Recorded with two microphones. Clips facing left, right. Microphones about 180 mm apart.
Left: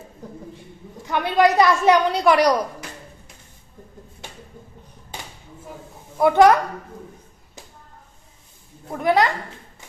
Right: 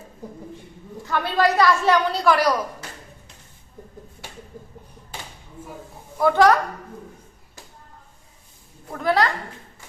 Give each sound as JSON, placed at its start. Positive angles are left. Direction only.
{"t": 1.0, "sound": "a woman's voice", "side_deg": 20}
{"t": 6.1, "sound": "a woman's voice", "side_deg": 20}
{"t": 8.9, "sound": "a woman's voice", "side_deg": 20}